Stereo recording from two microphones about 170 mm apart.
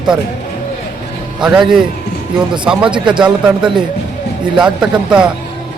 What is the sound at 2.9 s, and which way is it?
Speech, 30° right (ahead or behind).